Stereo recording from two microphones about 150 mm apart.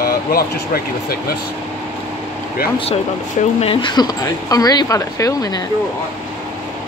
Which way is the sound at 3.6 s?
30° left (ahead or behind).